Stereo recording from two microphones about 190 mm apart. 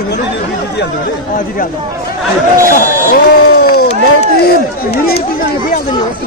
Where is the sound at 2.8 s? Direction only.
50° left (ahead or behind).